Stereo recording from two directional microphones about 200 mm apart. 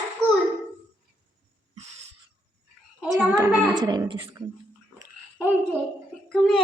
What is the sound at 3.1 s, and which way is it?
Speech, 10° right (ahead or behind).